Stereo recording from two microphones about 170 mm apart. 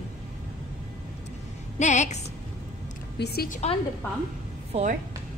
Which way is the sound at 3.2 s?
70° left (ahead or behind).